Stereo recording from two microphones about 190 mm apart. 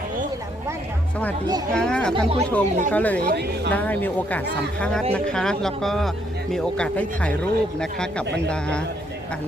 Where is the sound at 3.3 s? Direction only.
60° right (ahead or behind).